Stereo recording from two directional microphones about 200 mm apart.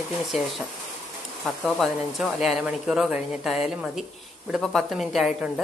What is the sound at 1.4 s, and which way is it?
A woman's voice, centre (ahead or behind).